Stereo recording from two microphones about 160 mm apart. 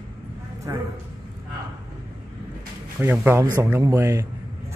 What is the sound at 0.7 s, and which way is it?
Speech, 20° right (ahead or behind).